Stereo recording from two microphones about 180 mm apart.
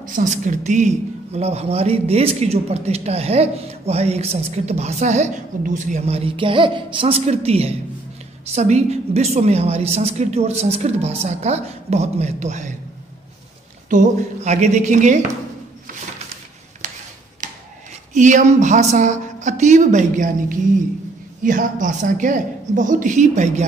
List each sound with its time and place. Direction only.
0.1 s a woman's voice: 45° right (ahead or behind)
13.8 s speech: 45° right (ahead or behind)
18.1 s speech: 45° right (ahead or behind)